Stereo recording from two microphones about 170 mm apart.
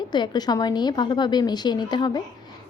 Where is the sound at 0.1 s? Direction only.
25° left (ahead or behind).